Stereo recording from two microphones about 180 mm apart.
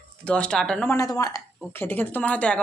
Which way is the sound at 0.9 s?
20° left (ahead or behind).